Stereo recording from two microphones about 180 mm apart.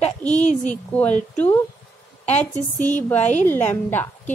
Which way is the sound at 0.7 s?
10° left (ahead or behind).